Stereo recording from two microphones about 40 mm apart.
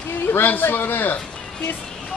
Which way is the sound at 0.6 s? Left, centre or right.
Left.